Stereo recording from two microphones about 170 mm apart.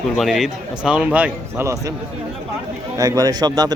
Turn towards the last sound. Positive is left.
turn(degrees=-25)  # may be behind; listen again after turning